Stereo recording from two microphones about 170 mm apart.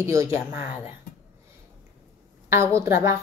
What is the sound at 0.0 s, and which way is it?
Speech, 20° right (ahead or behind).